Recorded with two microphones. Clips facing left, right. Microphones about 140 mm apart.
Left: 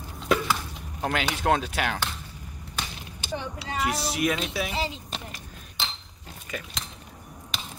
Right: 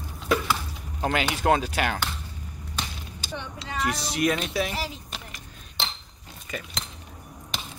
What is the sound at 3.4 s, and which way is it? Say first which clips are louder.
Speech: even; 5° left (ahead or behind).